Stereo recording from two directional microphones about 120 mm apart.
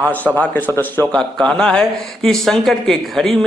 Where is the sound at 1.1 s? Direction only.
5° left (ahead or behind).